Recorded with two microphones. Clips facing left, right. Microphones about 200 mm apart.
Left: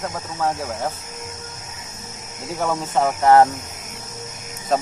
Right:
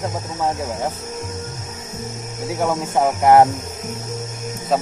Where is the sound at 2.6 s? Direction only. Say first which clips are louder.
Right 2 dB; 15° right (ahead or behind).